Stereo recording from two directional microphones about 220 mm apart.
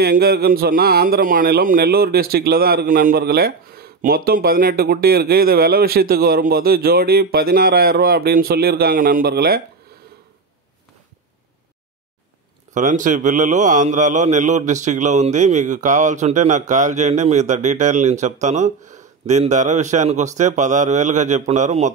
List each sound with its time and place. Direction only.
0.0 s speech: 45° right (ahead or behind)
12.7 s a man's voice: 35° right (ahead or behind)